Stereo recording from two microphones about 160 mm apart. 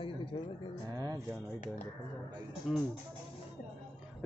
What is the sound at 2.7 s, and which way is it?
Speech, 5° right (ahead or behind).